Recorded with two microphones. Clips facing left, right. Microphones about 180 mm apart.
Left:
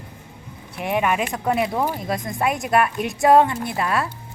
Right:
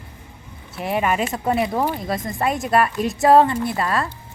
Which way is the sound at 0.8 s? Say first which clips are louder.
Even; centre (ahead or behind).